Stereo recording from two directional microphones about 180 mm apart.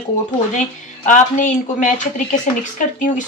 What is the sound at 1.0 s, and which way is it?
Speech, 45° left (ahead or behind).